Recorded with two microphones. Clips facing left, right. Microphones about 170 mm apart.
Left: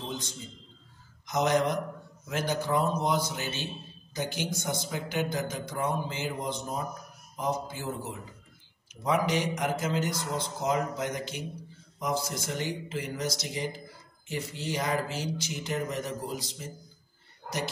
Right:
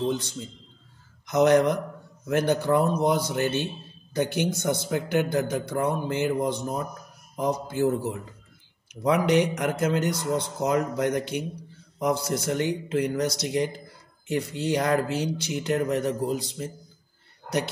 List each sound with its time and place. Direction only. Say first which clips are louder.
1.2 s a man's voice: right 7 dB; 60° right (ahead or behind)